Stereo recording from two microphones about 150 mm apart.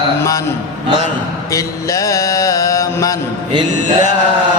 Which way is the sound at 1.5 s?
20° left (ahead or behind).